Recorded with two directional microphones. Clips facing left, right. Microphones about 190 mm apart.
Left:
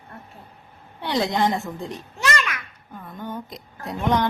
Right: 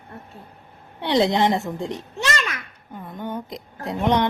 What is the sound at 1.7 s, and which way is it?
Babbling, 25° right (ahead or behind).